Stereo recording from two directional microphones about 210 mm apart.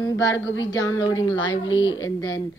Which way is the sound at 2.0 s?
15° left (ahead or behind).